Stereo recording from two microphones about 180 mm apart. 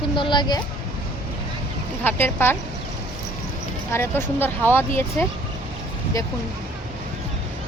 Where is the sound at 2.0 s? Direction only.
10° left (ahead or behind).